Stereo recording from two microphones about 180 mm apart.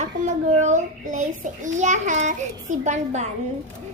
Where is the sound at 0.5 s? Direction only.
40° right (ahead or behind).